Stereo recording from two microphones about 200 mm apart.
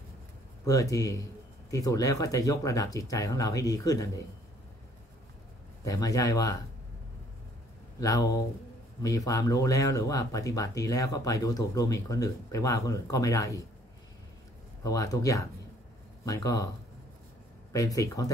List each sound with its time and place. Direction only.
0.7 s speech: 15° left (ahead or behind)
5.9 s speech: 15° left (ahead or behind)
8.0 s speech: 15° left (ahead or behind)
14.8 s speech: 15° left (ahead or behind)
17.7 s speech: 15° left (ahead or behind)